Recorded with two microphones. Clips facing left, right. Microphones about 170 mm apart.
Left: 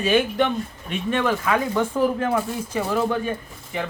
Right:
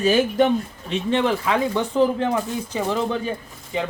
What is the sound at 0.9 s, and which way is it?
Speech, 25° right (ahead or behind).